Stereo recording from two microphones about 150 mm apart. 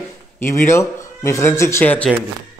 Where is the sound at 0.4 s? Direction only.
15° left (ahead or behind).